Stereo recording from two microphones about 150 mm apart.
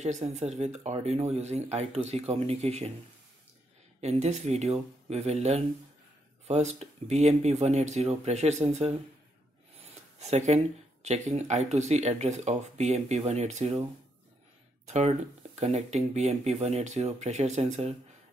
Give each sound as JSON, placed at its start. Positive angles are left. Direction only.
{"t": 0.0, "sound": "speech", "side_deg": -50}
{"t": 4.0, "sound": "speech", "side_deg": -50}
{"t": 9.9, "sound": "speech", "side_deg": -45}
{"t": 14.9, "sound": "speech", "side_deg": -50}